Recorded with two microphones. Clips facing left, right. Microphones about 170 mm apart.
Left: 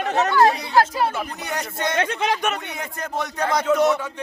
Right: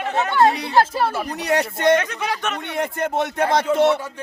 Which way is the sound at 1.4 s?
70° right (ahead or behind).